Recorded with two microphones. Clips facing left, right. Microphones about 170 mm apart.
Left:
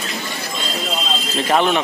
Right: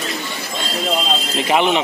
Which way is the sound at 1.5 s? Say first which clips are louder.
Even; 15° right (ahead or behind).